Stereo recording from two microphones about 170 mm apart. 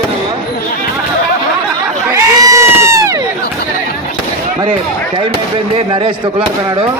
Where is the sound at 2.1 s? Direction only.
15° right (ahead or behind).